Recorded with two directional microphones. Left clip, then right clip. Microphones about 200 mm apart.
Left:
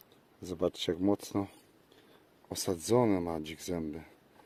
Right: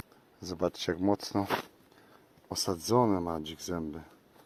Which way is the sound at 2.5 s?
25° left (ahead or behind).